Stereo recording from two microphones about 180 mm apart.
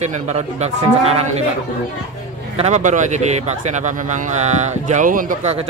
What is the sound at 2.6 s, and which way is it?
Speech, 40° right (ahead or behind).